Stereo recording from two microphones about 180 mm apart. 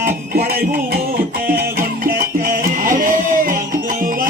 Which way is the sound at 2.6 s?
50° right (ahead or behind).